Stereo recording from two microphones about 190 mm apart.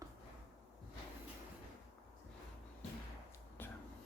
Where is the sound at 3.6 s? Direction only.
10° left (ahead or behind).